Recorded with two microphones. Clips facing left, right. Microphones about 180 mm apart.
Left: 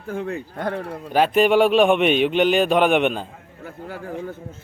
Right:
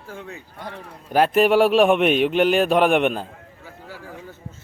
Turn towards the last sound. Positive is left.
turn(degrees=55)  # may be behind; listen again after turning